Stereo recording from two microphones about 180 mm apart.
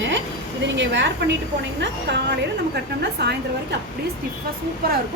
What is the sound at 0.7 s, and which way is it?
Speech, 80° right.